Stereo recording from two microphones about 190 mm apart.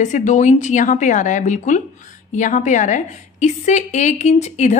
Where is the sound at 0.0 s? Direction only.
40° left (ahead or behind).